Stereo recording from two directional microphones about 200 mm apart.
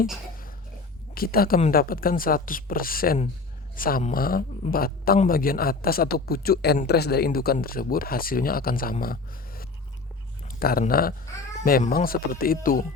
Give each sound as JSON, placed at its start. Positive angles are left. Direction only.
{"t": 1.1, "sound": "speech", "side_deg": 50}
{"t": 10.6, "sound": "speech", "side_deg": 50}